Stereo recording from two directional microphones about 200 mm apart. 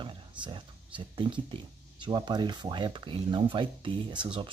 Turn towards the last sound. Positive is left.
turn(degrees=-25)  # may be behind; listen again after turning